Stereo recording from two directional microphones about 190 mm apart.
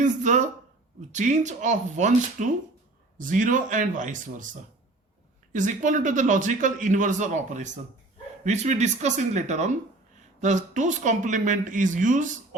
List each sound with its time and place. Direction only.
0.0 s a man's voice: 40° right (ahead or behind)
5.5 s a man's voice: 40° right (ahead or behind)